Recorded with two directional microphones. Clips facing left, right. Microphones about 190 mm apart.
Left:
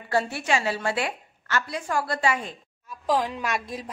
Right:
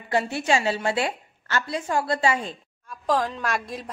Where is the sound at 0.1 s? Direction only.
25° right (ahead or behind).